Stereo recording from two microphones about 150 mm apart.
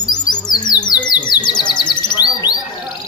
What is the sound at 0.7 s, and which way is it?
Bird, 30° left (ahead or behind).